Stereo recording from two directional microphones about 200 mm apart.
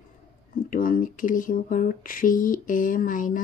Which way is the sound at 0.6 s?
45° left (ahead or behind).